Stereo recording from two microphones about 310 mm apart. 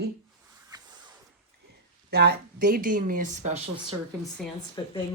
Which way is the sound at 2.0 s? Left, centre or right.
Right.